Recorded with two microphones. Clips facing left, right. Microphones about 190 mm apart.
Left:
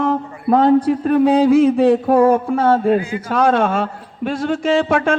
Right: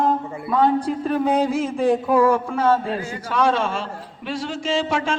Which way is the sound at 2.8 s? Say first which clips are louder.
Left 10 dB; 55° left (ahead or behind).